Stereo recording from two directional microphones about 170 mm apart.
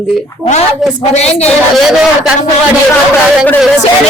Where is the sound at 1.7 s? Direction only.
5° right (ahead or behind).